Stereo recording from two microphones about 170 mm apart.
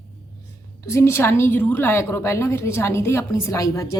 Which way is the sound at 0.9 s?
15° left (ahead or behind).